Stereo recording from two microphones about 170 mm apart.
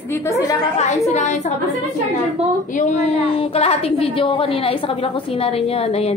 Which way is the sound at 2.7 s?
40° left (ahead or behind).